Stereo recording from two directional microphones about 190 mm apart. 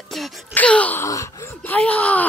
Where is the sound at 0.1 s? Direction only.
5° left (ahead or behind).